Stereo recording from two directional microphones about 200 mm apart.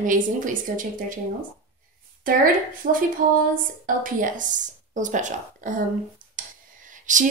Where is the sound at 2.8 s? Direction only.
40° right (ahead or behind).